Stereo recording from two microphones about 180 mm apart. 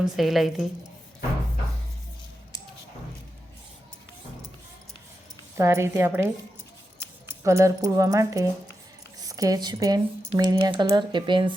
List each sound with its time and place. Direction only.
0.0 s speech: centre (ahead or behind)
5.5 s a woman's voice: 15° right (ahead or behind)